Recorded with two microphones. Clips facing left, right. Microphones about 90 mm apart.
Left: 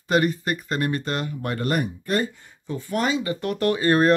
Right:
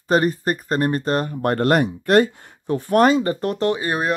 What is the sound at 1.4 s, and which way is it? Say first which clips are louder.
Speech: right 8 dB; 60° right (ahead or behind).